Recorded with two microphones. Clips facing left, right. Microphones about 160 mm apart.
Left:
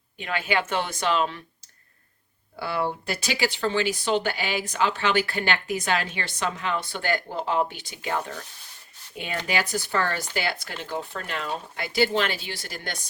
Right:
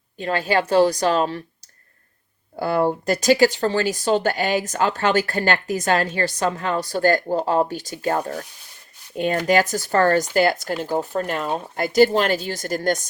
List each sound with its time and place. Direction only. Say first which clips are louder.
0.2 s speech: right 6 dB; 40° right (ahead or behind)
2.6 s speech: right 8 dB; 45° right (ahead or behind)